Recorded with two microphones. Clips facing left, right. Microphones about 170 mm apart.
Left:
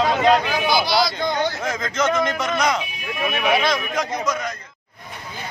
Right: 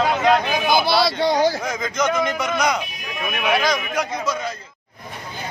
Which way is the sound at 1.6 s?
Centre (ahead or behind).